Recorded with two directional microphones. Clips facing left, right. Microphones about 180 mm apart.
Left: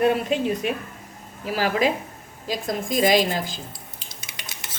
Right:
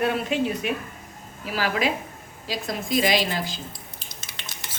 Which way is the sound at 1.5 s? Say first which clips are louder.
Left 3 dB; 45° left (ahead or behind).